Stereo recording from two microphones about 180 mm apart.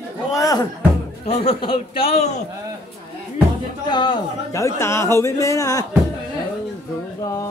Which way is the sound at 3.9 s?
25° left (ahead or behind).